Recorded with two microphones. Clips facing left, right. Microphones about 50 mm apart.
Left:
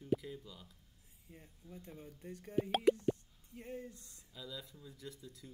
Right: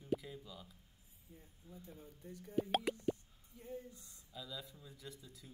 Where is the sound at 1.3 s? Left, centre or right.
Left.